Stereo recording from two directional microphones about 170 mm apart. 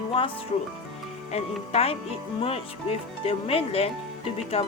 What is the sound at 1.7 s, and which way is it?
Speech, 35° left (ahead or behind).